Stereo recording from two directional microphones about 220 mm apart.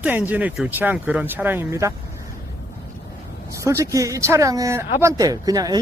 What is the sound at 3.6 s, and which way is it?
Speech, 15° right (ahead or behind).